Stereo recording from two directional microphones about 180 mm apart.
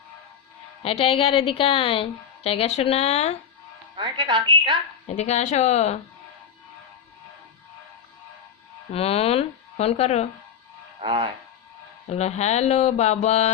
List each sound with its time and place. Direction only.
0.8 s a woman's voice: 35° left (ahead or behind)
3.9 s a woman's voice: 25° right (ahead or behind)
5.0 s a woman's voice: 40° left (ahead or behind)
8.9 s a woman's voice: 35° left (ahead or behind)
11.0 s a woman's voice: 30° right (ahead or behind)
12.0 s a woman's voice: 40° left (ahead or behind)